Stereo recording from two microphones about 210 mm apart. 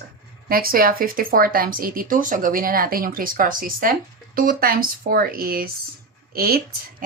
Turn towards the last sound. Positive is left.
turn(degrees=-45)  # may be behind; listen again after turning